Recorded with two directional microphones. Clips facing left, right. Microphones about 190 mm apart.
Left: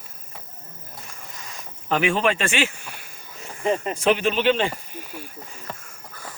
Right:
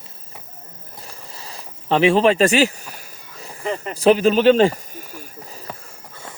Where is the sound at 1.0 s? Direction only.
35° right (ahead or behind).